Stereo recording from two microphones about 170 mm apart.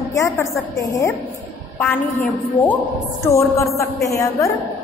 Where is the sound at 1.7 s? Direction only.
10° left (ahead or behind).